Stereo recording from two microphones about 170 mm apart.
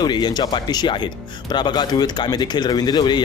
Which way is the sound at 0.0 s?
25° left (ahead or behind).